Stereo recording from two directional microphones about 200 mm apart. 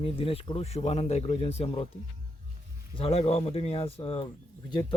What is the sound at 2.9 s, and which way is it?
A man's voice, 30° left (ahead or behind).